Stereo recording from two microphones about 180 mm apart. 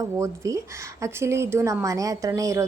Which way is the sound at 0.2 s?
15° right (ahead or behind).